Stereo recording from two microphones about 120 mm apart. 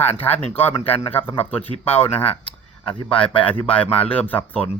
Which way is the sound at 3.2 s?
45° left (ahead or behind).